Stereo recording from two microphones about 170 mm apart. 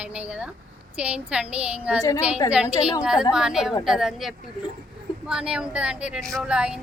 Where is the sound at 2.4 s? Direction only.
25° left (ahead or behind).